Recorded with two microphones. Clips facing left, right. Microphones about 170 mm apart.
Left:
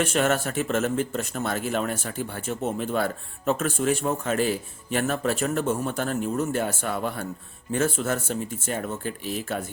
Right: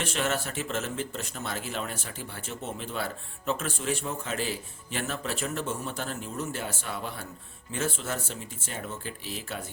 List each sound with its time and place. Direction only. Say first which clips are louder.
0.0 s speech: left 7 dB; 50° left (ahead or behind)